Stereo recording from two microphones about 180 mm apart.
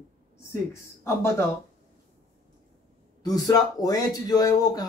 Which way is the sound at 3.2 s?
20° left (ahead or behind).